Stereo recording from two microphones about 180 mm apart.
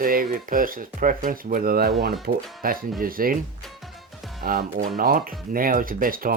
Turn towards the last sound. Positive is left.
turn(degrees=-50)  # may be behind; listen again after turning